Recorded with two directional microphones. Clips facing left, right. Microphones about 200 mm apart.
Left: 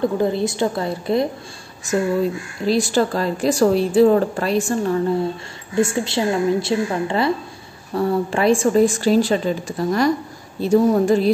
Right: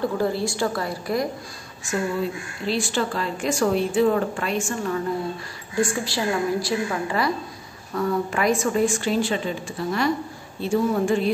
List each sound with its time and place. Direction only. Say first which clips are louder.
0.0 s a woman's voice: left 4 dB; 20° left (ahead or behind)
2.6 s a woman's voice: left 7 dB; 40° left (ahead or behind)
5.8 s a woman's voice: left 5 dB; 25° left (ahead or behind)